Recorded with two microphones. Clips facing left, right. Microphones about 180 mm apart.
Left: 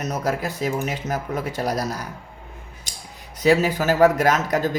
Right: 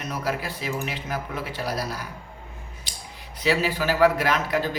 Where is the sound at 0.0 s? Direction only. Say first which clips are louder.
Left 4 dB; 45° left (ahead or behind).